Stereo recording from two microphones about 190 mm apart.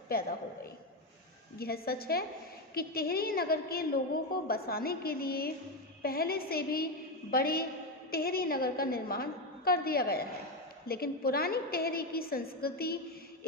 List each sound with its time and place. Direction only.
0.1 s a woman's voice: 50° left (ahead or behind)
1.5 s a woman's voice: 55° left (ahead or behind)